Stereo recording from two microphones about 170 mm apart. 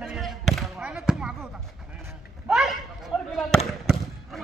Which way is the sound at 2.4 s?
Centre (ahead or behind).